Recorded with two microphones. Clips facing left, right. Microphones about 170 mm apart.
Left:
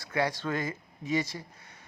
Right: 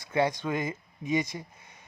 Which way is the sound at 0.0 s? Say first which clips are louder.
Right 3 dB; 20° right (ahead or behind).